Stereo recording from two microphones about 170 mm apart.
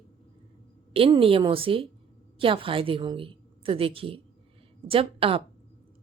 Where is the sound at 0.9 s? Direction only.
35° right (ahead or behind).